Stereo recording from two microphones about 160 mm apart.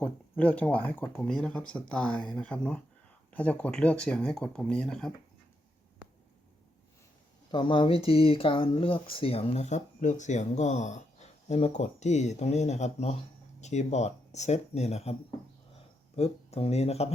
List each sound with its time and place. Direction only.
0.0 s speech: 10° left (ahead or behind)
7.5 s speech: 30° left (ahead or behind)
16.1 s speech: 40° left (ahead or behind)